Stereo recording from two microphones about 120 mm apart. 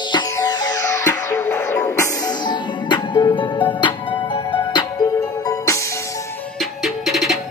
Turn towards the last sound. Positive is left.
turn(degrees=0)  # may be behind; listen again after turning